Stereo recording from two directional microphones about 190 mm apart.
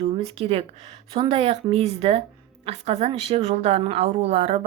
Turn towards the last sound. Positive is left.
turn(degrees=-30)  # may be behind; listen again after turning